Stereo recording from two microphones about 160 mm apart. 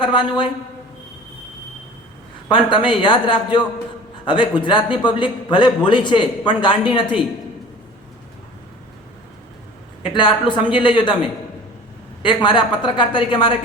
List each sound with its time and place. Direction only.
0.0 s a man's voice: 30° left (ahead or behind)
2.5 s a man's voice: 30° left (ahead or behind)
10.0 s a man's voice: 30° left (ahead or behind)
12.2 s a man's voice: 30° left (ahead or behind)